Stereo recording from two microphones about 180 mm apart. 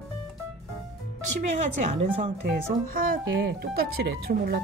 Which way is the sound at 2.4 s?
50° right (ahead or behind).